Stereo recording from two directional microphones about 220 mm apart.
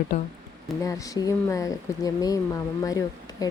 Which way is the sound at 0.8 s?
15° left (ahead or behind).